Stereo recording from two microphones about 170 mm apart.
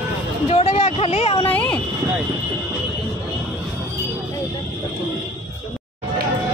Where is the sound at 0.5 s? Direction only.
35° left (ahead or behind).